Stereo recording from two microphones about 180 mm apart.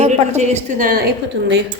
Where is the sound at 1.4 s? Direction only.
80° right.